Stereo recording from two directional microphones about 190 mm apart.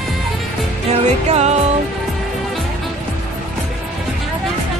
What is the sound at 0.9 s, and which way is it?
Music, 35° right (ahead or behind).